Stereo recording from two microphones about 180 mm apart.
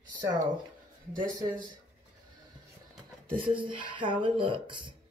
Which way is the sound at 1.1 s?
50° right (ahead or behind).